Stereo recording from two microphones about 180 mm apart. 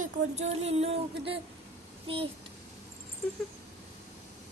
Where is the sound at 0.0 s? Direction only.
40° right (ahead or behind).